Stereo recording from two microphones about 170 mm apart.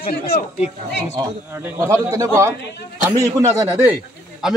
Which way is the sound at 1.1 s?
15° right (ahead or behind).